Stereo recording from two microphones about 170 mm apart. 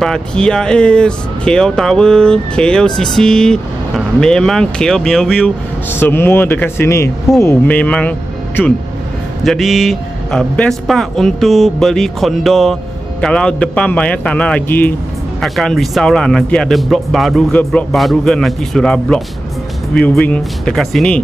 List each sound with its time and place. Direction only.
0.0 s speech: 5° left (ahead or behind)
5.9 s a man's voice: 10° left (ahead or behind)